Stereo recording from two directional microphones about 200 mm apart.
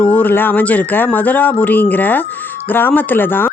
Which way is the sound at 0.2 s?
10° left (ahead or behind).